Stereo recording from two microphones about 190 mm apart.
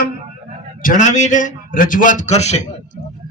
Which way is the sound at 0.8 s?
45° left (ahead or behind).